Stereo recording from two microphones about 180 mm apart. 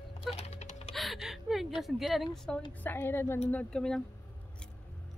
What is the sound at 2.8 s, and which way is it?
Speech, 10° left (ahead or behind).